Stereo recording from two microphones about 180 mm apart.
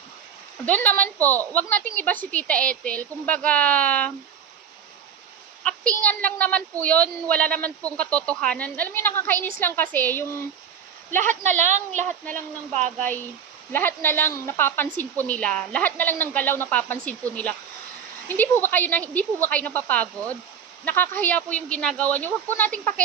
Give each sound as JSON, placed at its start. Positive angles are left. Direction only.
{"t": 0.7, "sound": "speech", "side_deg": 10}
{"t": 5.7, "sound": "a woman's voice", "side_deg": 5}
{"t": 11.1, "sound": "a woman's voice", "side_deg": -40}
{"t": 13.7, "sound": "speech", "side_deg": 10}
{"t": 18.3, "sound": "speech", "side_deg": 10}